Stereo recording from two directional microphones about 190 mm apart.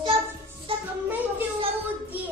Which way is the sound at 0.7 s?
30° right (ahead or behind).